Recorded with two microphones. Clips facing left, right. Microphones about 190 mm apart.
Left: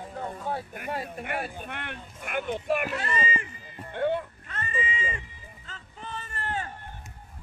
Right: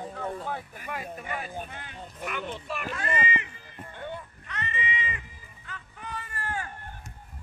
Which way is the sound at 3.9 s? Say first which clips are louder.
Left 12 dB; 65° left (ahead or behind).